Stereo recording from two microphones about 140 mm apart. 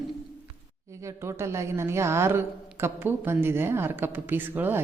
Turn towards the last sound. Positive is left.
turn(degrees=-15)  # may be behind; listen again after turning